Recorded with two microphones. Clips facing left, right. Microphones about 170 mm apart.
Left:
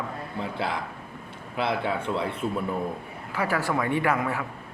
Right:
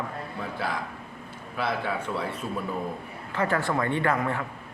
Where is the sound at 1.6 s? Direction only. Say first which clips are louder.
Left 2 dB; 20° left (ahead or behind).